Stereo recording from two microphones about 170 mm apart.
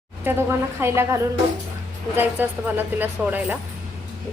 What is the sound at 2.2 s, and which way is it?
A woman's voice, 10° right (ahead or behind).